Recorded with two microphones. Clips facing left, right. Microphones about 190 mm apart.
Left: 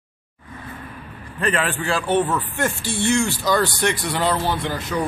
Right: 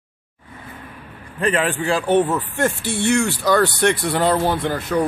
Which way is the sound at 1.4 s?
15° right (ahead or behind).